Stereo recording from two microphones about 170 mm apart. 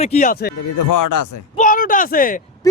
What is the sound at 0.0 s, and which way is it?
Speech, 40° left (ahead or behind).